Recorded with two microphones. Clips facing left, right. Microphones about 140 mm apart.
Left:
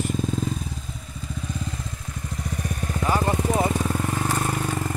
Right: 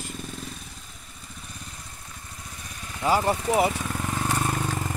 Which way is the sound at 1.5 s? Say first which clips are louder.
Left 13 dB; 90° left.